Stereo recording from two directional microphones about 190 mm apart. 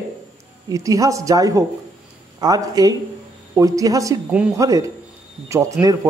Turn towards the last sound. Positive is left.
turn(degrees=-15)  # may be behind; listen again after turning